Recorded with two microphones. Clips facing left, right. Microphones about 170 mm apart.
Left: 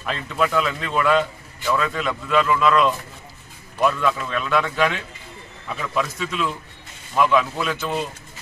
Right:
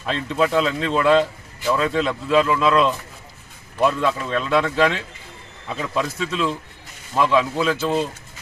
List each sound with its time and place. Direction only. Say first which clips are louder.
0.0 s speech: right 3 dB; 30° right (ahead or behind)